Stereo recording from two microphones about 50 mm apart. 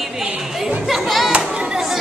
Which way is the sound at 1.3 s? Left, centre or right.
Centre.